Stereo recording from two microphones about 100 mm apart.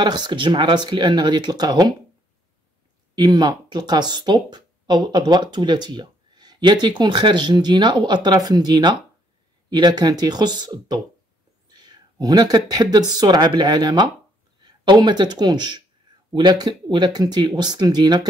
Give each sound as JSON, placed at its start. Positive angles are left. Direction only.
{"t": 0.0, "sound": "speech", "side_deg": -50}
{"t": 3.2, "sound": "speech", "side_deg": -45}